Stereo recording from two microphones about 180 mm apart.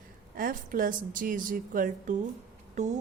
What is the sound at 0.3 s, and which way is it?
A woman's voice, 50° right (ahead or behind).